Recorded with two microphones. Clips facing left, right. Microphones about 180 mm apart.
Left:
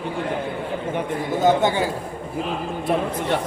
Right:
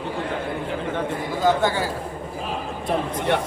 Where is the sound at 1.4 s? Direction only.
20° left (ahead or behind).